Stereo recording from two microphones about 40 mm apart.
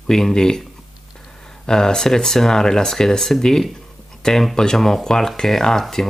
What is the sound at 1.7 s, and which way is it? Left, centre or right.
Speech, centre.